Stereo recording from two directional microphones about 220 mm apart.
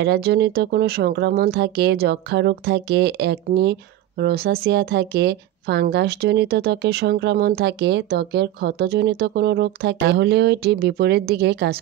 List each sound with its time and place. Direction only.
0.0 s a woman's voice: 50° right (ahead or behind)